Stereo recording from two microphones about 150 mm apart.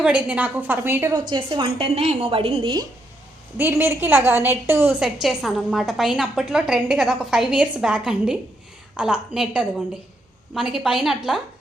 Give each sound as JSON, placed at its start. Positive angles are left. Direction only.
{"t": 0.0, "sound": "a woman's voice", "side_deg": -10}
{"t": 1.3, "sound": "a woman's voice", "side_deg": -30}
{"t": 3.6, "sound": "a woman's voice", "side_deg": -15}
{"t": 5.2, "sound": "a woman's voice", "side_deg": 0}